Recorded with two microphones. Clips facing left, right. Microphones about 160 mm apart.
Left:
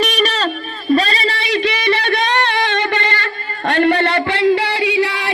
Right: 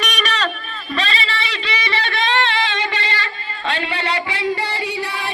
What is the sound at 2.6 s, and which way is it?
Music, 50° left (ahead or behind).